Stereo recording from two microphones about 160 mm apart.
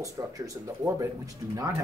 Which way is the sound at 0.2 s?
20° right (ahead or behind).